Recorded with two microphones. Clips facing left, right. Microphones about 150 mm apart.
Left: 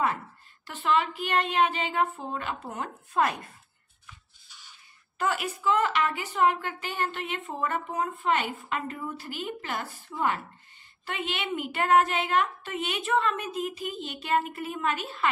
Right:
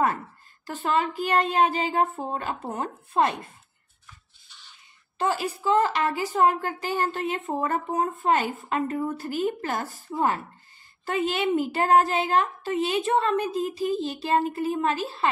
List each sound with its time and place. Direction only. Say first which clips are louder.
0.7 s speech: right 1 dB; 40° right (ahead or behind)
5.1 s speech: right 3 dB; 30° right (ahead or behind)